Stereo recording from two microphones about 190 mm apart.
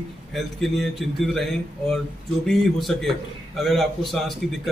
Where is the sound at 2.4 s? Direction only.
Centre (ahead or behind).